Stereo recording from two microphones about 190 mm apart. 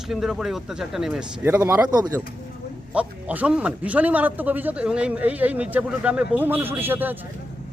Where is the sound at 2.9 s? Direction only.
5° right (ahead or behind).